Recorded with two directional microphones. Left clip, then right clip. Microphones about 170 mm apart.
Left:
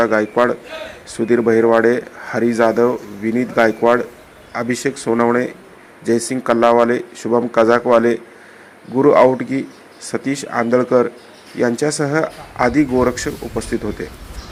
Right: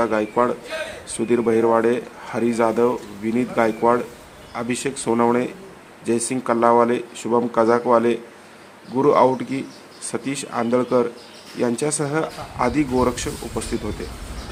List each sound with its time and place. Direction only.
0.0 s speech: 15° left (ahead or behind)